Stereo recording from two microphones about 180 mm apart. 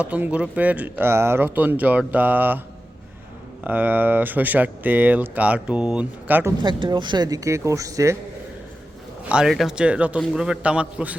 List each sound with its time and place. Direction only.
0.0 s speech: 10° right (ahead or behind)
3.6 s speech: 10° right (ahead or behind)
6.6 s speech: 25° right (ahead or behind)
9.3 s a man's voice: centre (ahead or behind)